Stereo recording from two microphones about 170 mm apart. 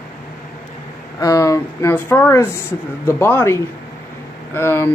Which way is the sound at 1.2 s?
20° left (ahead or behind).